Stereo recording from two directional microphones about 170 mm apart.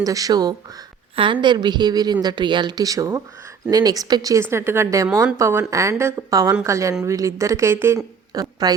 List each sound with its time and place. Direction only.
0.0 s a woman's voice: 20° right (ahead or behind)